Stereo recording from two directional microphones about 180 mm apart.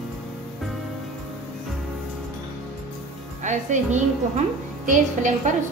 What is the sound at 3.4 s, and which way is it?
A woman's voice, 40° right (ahead or behind).